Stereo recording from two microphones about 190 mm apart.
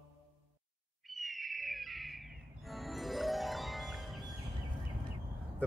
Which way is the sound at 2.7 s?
Centre (ahead or behind).